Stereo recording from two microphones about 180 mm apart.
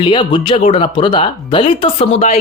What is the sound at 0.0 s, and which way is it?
Speech, 25° left (ahead or behind).